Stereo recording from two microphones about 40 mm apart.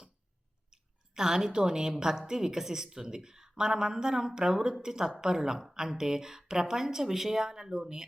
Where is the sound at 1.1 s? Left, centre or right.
Centre.